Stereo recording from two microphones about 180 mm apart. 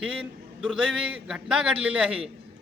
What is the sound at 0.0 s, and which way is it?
A man's voice, 5° right (ahead or behind).